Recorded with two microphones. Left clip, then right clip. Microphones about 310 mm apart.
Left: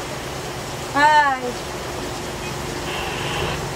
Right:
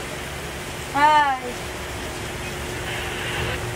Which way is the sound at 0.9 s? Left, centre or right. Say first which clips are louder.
Left 2 dB; left.